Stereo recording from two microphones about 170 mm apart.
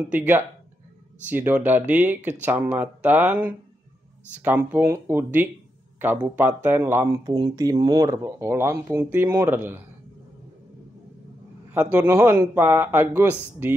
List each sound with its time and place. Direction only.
0.1 s speech: 10° right (ahead or behind)
11.7 s speech: 10° right (ahead or behind)